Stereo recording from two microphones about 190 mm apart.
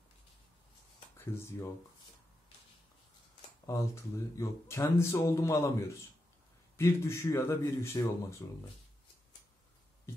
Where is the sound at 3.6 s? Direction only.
15° left (ahead or behind).